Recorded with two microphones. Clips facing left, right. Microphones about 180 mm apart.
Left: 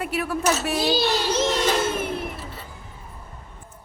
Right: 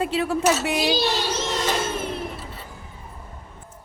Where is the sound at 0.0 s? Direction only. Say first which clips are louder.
Right 3 dB; 25° right (ahead or behind).